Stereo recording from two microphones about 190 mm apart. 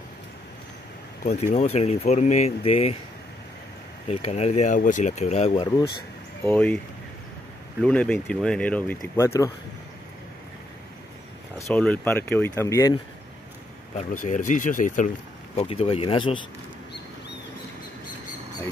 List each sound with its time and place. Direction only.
1.2 s speech: 35° left (ahead or behind)
4.1 s speech: 35° left (ahead or behind)
6.4 s speech: 10° left (ahead or behind)
7.8 s speech: 5° left (ahead or behind)
11.6 s speech: 5° left (ahead or behind)
13.9 s speech: 40° left (ahead or behind)
15.5 s speech: 30° left (ahead or behind)